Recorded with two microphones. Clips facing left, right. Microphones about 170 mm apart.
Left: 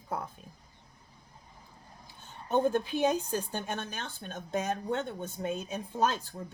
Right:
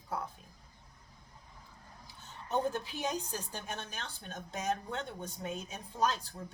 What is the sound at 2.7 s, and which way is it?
Speech, 55° left (ahead or behind).